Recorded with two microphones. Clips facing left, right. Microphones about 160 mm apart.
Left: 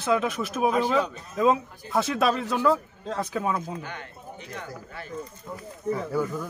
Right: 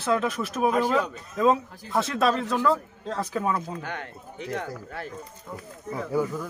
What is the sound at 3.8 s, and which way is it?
Speech, 65° right (ahead or behind).